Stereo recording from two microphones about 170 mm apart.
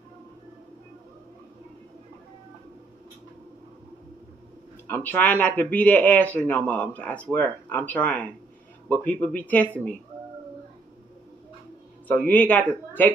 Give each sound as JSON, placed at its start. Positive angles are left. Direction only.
{"t": 4.8, "sound": "speech", "side_deg": 10}
{"t": 12.1, "sound": "speech", "side_deg": 10}